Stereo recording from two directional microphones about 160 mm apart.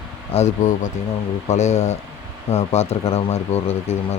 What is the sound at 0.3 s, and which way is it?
Speech, 50° left (ahead or behind).